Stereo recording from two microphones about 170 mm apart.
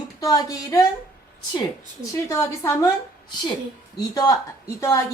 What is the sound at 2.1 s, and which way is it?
Speech, 15° left (ahead or behind).